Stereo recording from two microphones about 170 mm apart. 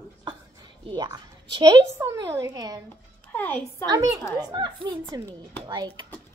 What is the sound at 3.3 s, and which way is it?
Speech, 10° left (ahead or behind).